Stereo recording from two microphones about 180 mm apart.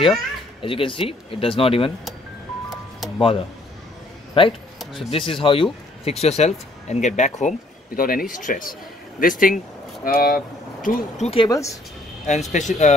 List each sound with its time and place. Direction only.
0.6 s speech: 30° left (ahead or behind)
3.2 s speech: 30° left (ahead or behind); by 11.1 s 55° left (ahead or behind)
11.1 s speech: 35° left (ahead or behind)
11.4 s speech: 20° left (ahead or behind)
12.3 s speech: 40° left (ahead or behind)